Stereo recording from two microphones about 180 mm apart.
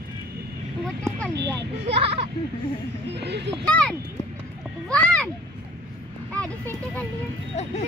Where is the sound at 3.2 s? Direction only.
70° right (ahead or behind).